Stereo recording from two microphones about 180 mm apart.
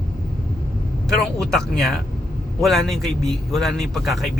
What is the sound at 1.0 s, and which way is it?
Speech, 5° left (ahead or behind).